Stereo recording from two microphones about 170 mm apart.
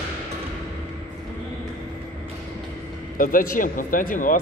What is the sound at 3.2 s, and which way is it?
Speech, 55° left (ahead or behind).